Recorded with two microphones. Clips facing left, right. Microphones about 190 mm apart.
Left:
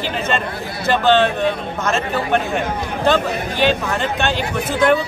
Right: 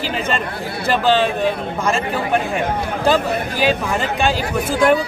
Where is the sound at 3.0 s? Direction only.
5° right (ahead or behind).